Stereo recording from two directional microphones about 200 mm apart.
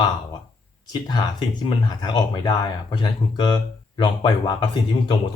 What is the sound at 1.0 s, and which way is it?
Speech, 20° left (ahead or behind).